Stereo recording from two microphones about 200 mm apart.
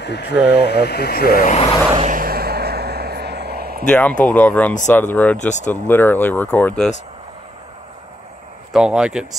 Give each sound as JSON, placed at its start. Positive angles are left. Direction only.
{"t": 0.0, "sound": "speech", "side_deg": 55}
{"t": 2.0, "sound": "vehicle", "side_deg": -45}
{"t": 3.8, "sound": "speech", "side_deg": 5}
{"t": 8.7, "sound": "speech", "side_deg": -5}